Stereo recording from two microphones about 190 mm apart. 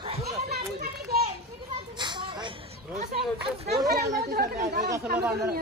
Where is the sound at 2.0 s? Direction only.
25° right (ahead or behind).